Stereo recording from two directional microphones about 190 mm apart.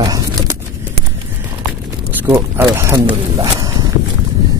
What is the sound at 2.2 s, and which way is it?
Speech, 15° right (ahead or behind).